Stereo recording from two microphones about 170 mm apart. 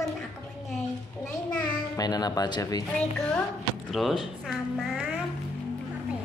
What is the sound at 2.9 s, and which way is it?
A woman's voice, 5° left (ahead or behind).